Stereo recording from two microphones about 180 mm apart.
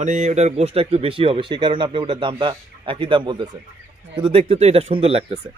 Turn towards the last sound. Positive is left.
turn(degrees=-30)  # may be behind; listen again after turning